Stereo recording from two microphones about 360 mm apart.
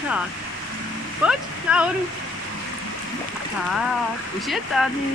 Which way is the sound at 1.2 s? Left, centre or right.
Centre.